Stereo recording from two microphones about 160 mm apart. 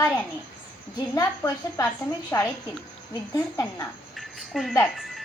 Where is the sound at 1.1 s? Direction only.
20° left (ahead or behind).